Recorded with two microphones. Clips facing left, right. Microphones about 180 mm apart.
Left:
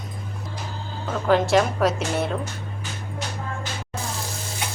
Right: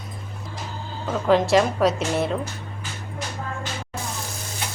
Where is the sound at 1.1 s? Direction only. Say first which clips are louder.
Right 1 dB; centre (ahead or behind).